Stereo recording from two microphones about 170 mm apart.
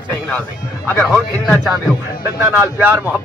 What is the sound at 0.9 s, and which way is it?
Speech, 5° left (ahead or behind).